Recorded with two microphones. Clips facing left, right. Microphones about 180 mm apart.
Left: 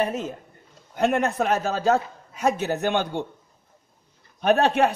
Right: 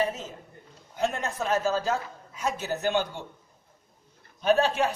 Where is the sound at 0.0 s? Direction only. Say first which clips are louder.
Left 3 dB; 60° left (ahead or behind).